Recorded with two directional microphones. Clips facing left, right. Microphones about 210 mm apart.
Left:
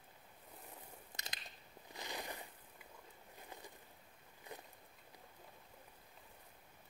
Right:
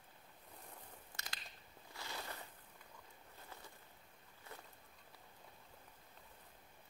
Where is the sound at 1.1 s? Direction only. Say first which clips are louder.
Left 1 dB; 20° left (ahead or behind).